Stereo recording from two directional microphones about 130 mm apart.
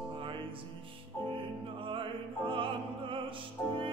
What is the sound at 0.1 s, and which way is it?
Music, 40° right (ahead or behind).